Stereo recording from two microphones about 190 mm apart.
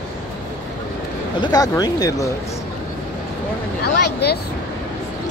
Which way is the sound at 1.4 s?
20° left (ahead or behind).